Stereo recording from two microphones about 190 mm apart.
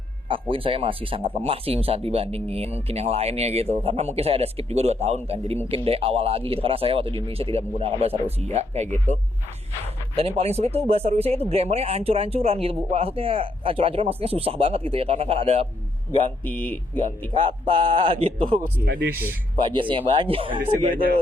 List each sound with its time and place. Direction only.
0.3 s speech: 25° right (ahead or behind)
16.4 s speech: 10° left (ahead or behind)
17.7 s speech: 25° right (ahead or behind)
19.6 s speech: 25° right (ahead or behind)